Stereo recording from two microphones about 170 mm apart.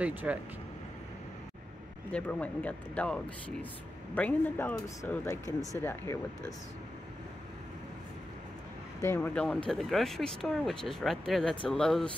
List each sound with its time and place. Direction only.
0.0 s speech: 10° right (ahead or behind)
2.1 s speech: 5° left (ahead or behind)
9.0 s speech: 10° left (ahead or behind)